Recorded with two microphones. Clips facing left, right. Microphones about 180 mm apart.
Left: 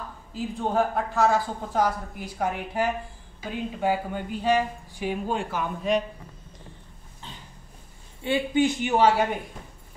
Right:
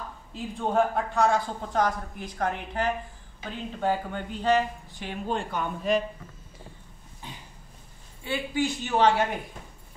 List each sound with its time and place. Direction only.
0.3 s a woman's voice: centre (ahead or behind)
7.2 s dog: 15° right (ahead or behind)
8.2 s a man's voice: 20° left (ahead or behind)